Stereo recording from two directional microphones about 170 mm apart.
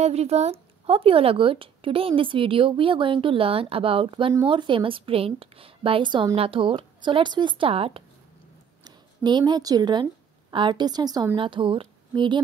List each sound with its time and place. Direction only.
0.0 s a woman's voice: 40° right (ahead or behind)